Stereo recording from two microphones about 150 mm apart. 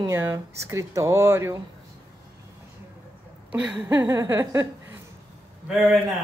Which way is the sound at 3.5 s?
10° right (ahead or behind).